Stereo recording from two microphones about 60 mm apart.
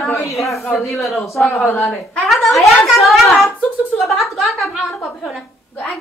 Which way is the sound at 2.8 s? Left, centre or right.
Centre.